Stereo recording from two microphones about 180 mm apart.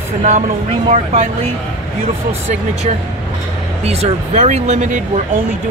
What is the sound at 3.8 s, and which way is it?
Speech, 35° right (ahead or behind).